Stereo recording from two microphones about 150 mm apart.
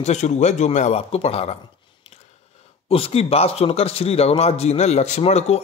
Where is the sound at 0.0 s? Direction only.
50° left (ahead or behind).